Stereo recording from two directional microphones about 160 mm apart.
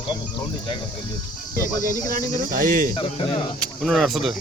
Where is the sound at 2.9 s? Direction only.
35° left (ahead or behind).